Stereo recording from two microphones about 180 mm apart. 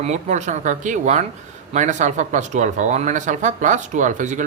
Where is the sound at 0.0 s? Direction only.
40° right (ahead or behind).